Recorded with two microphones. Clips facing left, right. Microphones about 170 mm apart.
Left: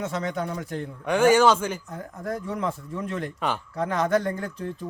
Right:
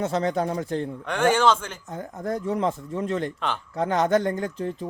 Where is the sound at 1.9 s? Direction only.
25° right (ahead or behind).